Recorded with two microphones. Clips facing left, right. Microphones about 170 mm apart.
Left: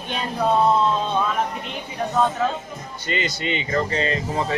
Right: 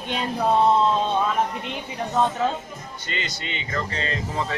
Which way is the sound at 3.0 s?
10° left (ahead or behind).